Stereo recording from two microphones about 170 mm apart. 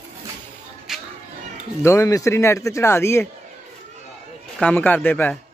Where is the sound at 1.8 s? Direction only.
20° left (ahead or behind).